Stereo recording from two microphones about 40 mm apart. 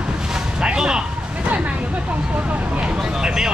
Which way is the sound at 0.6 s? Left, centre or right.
Centre.